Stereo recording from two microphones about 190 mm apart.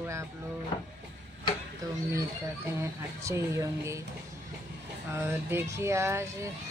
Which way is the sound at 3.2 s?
15° right (ahead or behind).